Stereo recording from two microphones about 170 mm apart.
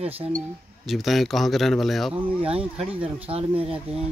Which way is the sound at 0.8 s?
Centre (ahead or behind).